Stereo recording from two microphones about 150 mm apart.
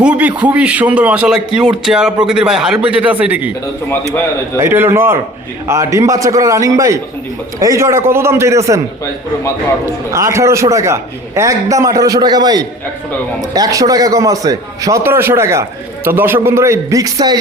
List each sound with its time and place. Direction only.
0.0 s a man's voice: 10° right (ahead or behind)
4.6 s a man's voice: 15° right (ahead or behind)
10.1 s a man's voice: 20° right (ahead or behind)